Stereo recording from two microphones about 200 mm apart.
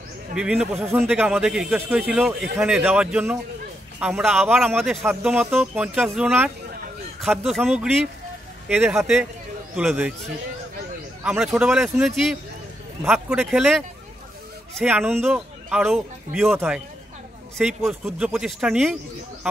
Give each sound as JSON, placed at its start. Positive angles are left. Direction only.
{"t": 0.3, "sound": "speech", "side_deg": -5}
{"t": 11.2, "sound": "speech", "side_deg": -5}
{"t": 17.8, "sound": "speech", "side_deg": -5}